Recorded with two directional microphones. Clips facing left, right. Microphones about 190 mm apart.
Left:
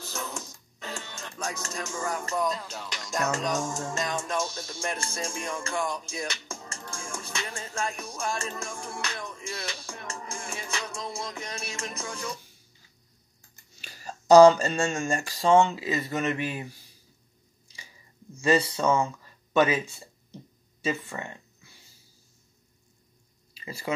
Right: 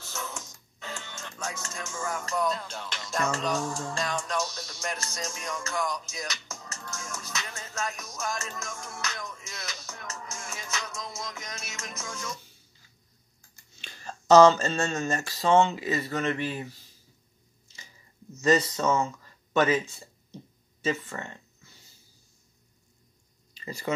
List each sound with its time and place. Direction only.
1.4 s music: 35° left (ahead or behind)
2.3 s speech: 10° left (ahead or behind)
3.9 s music: 20° left (ahead or behind)
13.7 s speech: 10° left (ahead or behind)
18.8 s a sound: 15° left (ahead or behind)
20.8 s speech: 15° left (ahead or behind)
23.5 s a sound: 10° left (ahead or behind)